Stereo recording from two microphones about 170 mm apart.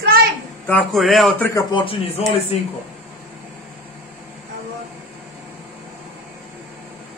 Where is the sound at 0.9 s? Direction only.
Centre (ahead or behind).